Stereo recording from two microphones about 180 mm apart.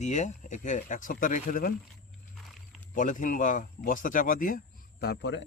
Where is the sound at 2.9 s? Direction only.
45° left (ahead or behind).